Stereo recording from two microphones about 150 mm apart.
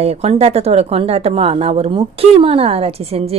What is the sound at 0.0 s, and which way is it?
A woman's voice, 45° right (ahead or behind).